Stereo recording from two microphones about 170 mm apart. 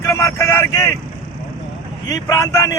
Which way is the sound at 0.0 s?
15° left (ahead or behind).